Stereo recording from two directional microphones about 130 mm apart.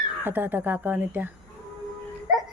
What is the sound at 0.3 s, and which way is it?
A woman's voice, 15° right (ahead or behind).